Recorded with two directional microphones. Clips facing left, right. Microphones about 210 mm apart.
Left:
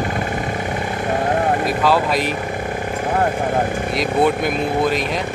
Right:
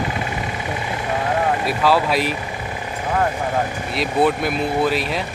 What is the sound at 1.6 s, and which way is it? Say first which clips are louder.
Speech: left 1 dB; 5° right (ahead or behind).